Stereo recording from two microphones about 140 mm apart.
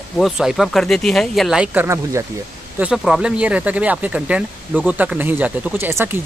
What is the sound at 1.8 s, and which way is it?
Speech, 20° right (ahead or behind).